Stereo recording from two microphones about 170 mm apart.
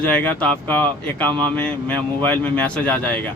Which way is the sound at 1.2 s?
25° right (ahead or behind).